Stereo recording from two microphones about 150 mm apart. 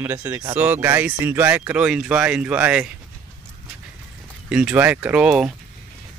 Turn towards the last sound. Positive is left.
turn(degrees=-5)  # may be behind; listen again after turning